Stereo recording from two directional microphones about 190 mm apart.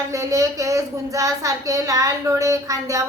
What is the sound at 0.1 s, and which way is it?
A woman's voice, 15° right (ahead or behind).